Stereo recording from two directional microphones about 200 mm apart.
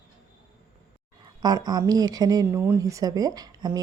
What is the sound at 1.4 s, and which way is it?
Speech, 20° right (ahead or behind).